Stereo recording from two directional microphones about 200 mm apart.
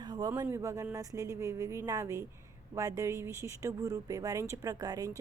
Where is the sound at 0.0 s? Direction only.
20° right (ahead or behind).